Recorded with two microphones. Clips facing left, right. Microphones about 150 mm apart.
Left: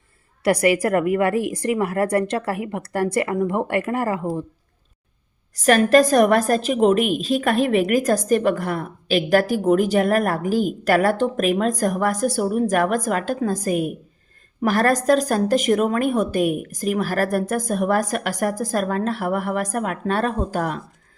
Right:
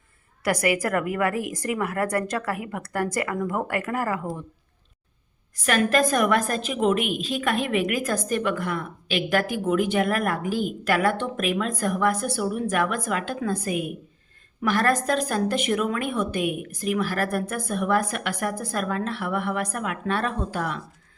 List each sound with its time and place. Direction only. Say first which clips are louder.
0.4 s a woman's voice: left 6 dB; 30° left (ahead or behind)
5.5 s a woman's voice: left 7 dB; 40° left (ahead or behind)